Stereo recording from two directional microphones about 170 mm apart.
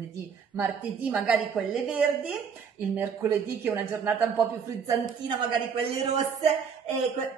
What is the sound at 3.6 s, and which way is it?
Speech, 15° right (ahead or behind).